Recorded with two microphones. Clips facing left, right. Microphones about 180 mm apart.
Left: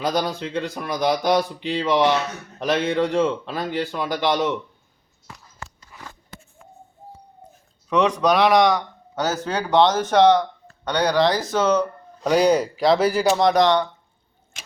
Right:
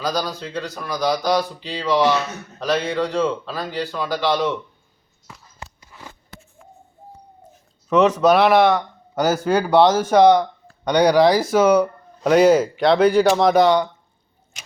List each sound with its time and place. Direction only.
0.0 s a man's voice: 25° left (ahead or behind)
7.9 s speech: 5° right (ahead or behind)